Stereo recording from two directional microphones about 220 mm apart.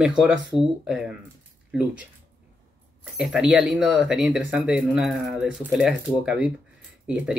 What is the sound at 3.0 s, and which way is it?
Speech, 5° right (ahead or behind).